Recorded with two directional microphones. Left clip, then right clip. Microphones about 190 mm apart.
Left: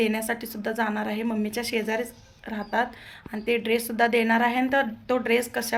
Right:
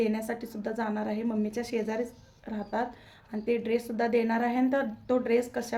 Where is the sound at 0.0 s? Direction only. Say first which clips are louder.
Left 4 dB; 5° right (ahead or behind).